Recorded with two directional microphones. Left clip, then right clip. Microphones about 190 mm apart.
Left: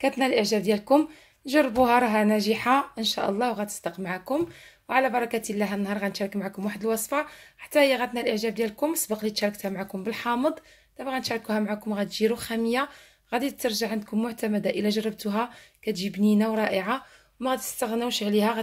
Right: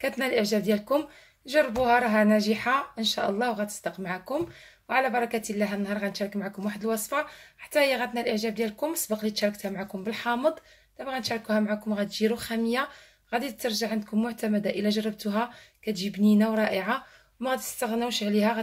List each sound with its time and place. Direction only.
0.0 s a woman's voice: 20° left (ahead or behind)